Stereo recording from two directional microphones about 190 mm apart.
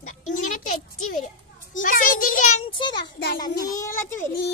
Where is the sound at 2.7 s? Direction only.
25° left (ahead or behind).